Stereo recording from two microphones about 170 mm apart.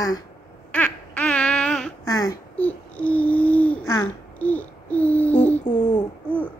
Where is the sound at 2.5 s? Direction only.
10° left (ahead or behind).